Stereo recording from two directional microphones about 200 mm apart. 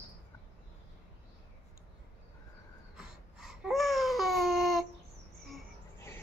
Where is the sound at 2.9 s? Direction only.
5° right (ahead or behind).